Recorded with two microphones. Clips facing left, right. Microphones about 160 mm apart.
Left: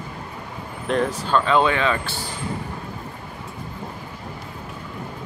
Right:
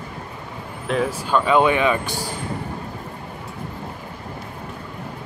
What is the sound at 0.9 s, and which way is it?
Speech, 5° right (ahead or behind).